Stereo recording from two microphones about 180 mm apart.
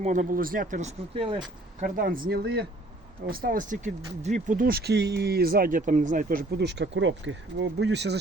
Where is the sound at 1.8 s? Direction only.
50° right (ahead or behind).